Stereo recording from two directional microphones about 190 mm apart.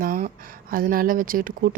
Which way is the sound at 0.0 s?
45° right (ahead or behind).